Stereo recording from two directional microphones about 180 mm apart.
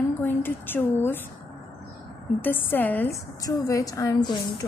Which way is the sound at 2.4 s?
10° left (ahead or behind).